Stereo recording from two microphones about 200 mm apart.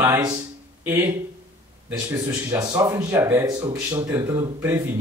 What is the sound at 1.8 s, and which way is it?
Speech, 10° right (ahead or behind).